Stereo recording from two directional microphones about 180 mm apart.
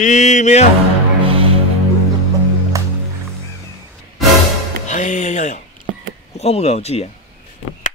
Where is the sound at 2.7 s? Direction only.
20° right (ahead or behind).